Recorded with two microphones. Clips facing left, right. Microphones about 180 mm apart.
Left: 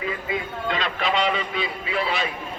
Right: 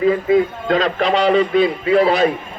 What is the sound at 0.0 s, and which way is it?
A man's voice, 45° right (ahead or behind).